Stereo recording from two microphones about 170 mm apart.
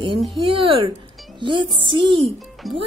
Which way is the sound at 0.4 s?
30° right (ahead or behind).